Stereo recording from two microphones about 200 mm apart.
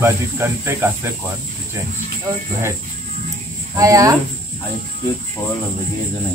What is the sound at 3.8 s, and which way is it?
Speech, 15° right (ahead or behind).